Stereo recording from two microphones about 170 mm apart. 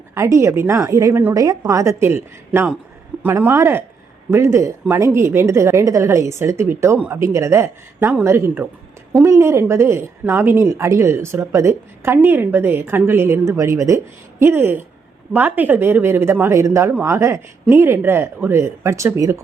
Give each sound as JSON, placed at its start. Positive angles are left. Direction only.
{"t": 0.1, "sound": "speech", "side_deg": -15}